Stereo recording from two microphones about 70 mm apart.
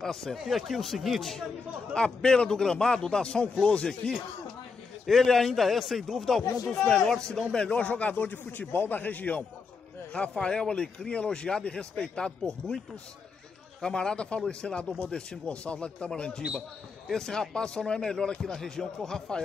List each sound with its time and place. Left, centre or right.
0.0 s speech: centre
2.0 s speech: centre
10.3 s speech: centre